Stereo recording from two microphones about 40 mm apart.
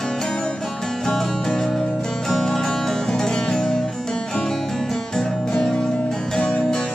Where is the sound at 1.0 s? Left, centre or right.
Centre.